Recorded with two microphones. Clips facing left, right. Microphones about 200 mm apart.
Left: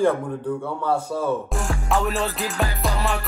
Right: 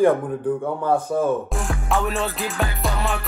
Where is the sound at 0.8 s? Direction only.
55° right (ahead or behind).